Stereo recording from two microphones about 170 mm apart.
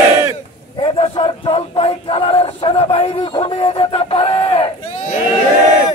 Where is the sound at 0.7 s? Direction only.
30° left (ahead or behind).